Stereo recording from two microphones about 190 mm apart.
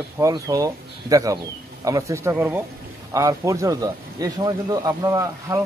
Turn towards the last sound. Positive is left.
turn(degrees=-15)  # may be behind; listen again after turning